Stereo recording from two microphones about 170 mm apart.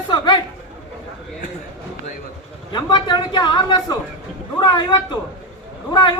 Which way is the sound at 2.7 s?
25° left (ahead or behind).